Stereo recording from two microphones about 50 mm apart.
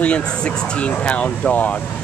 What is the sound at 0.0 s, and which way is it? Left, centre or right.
Speech, left.